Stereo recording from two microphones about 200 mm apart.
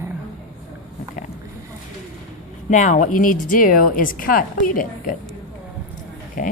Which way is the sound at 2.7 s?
40° left (ahead or behind).